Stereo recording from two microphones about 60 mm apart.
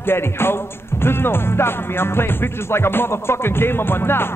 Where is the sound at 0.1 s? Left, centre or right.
Left.